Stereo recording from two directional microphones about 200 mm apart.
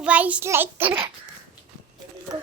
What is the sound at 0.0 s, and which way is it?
Speech, 5° right (ahead or behind).